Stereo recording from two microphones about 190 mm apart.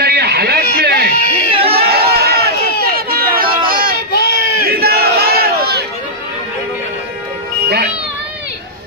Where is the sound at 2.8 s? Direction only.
50° right (ahead or behind).